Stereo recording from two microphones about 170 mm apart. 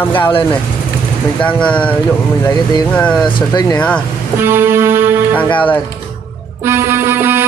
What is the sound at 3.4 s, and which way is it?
Speech, 25° left (ahead or behind).